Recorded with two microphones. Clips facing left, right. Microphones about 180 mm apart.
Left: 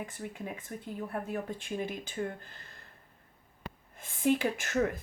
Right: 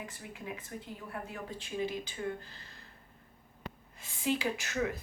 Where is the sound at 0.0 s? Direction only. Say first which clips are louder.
Left 4 dB; 50° left (ahead or behind).